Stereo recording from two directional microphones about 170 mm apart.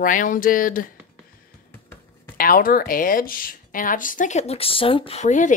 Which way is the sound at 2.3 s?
55° left (ahead or behind).